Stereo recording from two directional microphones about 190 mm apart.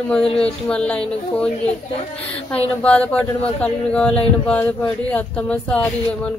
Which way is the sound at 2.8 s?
5° left (ahead or behind).